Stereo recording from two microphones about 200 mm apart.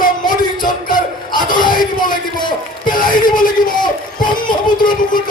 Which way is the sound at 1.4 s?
45° left (ahead or behind).